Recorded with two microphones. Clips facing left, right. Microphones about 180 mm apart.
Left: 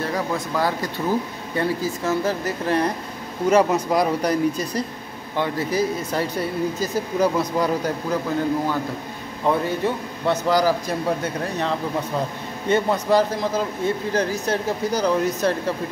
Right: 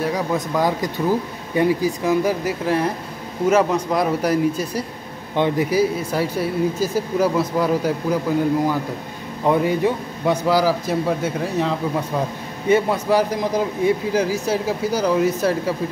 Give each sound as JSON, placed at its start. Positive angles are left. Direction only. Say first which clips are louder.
{"t": 0.0, "sound": "speech", "louder": "right 3 dB", "side_deg": -15}
{"t": 5.3, "sound": "speech", "louder": "right 5 dB", "side_deg": -20}
{"t": 5.7, "sound": "speech", "louder": "right 3 dB", "side_deg": -10}
{"t": 9.5, "sound": "speech", "louder": "right 4 dB", "side_deg": -15}